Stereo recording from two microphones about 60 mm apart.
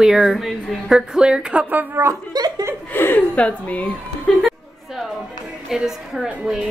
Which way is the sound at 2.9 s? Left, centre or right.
Left.